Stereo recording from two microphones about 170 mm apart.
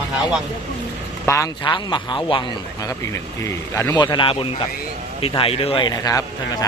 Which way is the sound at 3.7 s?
15° left (ahead or behind).